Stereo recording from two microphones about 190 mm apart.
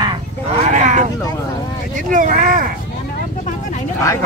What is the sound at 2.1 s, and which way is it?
Speech, 45° right (ahead or behind).